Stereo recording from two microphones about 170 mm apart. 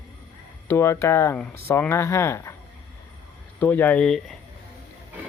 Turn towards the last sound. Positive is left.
turn(degrees=5)  # may be behind; listen again after turning